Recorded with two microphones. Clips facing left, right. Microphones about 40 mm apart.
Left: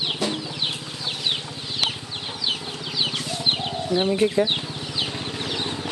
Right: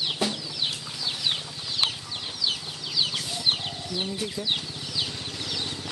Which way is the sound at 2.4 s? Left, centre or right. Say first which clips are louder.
Left 4 dB; left.